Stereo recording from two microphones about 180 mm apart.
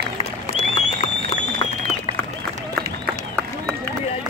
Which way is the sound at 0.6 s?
35° left (ahead or behind).